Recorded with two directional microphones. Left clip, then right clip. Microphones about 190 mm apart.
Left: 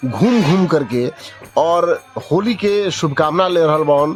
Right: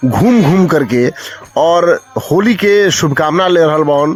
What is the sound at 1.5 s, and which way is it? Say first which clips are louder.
Speech: right 5 dB; 25° right (ahead or behind).